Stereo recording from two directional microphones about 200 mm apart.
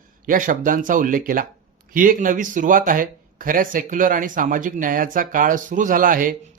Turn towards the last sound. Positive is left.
turn(degrees=-45)  # may be behind; listen again after turning